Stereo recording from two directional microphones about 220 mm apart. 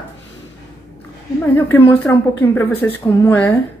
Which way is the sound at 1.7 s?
10° left (ahead or behind).